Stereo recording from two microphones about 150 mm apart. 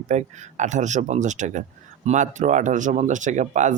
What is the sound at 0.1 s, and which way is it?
Speech, 50° right (ahead or behind).